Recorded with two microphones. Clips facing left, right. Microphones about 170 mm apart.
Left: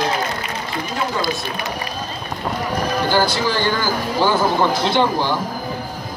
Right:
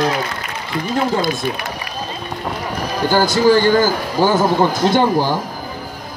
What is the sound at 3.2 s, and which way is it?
A man's voice, 45° right (ahead or behind).